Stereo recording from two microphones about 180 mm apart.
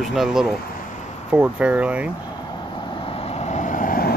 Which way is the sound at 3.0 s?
35° left (ahead or behind).